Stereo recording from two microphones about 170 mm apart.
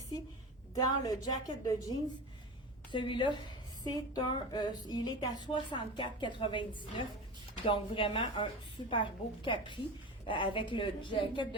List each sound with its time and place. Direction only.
0.7 s a woman's voice: 20° left (ahead or behind)